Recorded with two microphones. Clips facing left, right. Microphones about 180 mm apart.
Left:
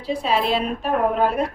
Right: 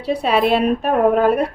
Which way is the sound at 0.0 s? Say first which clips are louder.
Right 5 dB; 65° right (ahead or behind).